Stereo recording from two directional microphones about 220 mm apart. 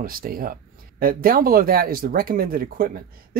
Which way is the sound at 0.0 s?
40° right (ahead or behind).